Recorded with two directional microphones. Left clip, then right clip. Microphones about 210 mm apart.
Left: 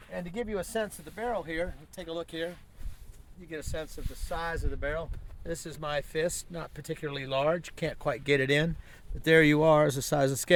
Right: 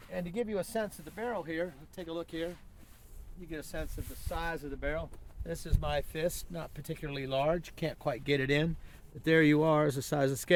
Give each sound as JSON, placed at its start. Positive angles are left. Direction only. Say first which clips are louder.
{"t": 0.1, "sound": "speech", "louder": "left 1 dB", "side_deg": 0}
{"t": 3.5, "sound": "speech", "louder": "left 3 dB", "side_deg": 20}